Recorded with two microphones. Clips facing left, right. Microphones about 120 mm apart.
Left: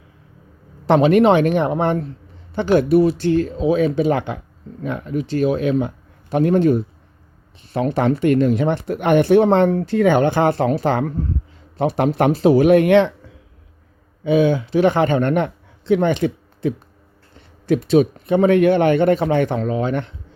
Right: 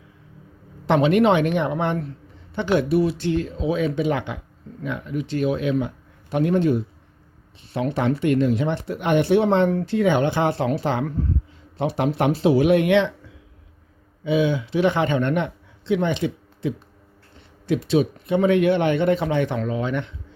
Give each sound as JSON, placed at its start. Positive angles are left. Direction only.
{"t": 0.9, "sound": "speech", "side_deg": 40}
{"t": 14.3, "sound": "a man's voice", "side_deg": 45}